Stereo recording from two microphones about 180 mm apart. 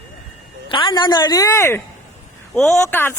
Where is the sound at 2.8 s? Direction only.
15° left (ahead or behind).